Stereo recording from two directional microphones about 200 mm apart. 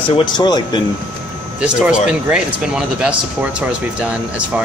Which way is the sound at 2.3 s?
5° right (ahead or behind).